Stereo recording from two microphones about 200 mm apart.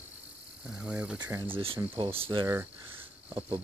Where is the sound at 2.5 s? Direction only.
10° right (ahead or behind).